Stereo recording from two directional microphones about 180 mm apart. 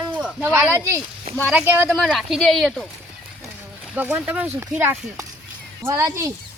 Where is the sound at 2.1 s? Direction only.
Centre (ahead or behind).